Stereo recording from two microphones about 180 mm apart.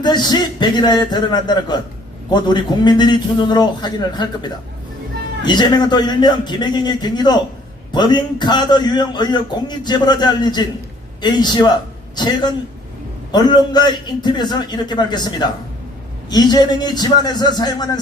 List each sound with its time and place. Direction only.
0.0 s a man's voice: 25° left (ahead or behind)
5.5 s a man's voice: 25° left (ahead or behind)